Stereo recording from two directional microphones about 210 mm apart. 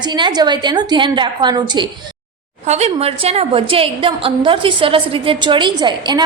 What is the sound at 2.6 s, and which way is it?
A woman's voice, 30° right (ahead or behind).